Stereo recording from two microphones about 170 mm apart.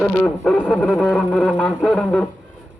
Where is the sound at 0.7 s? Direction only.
5° left (ahead or behind).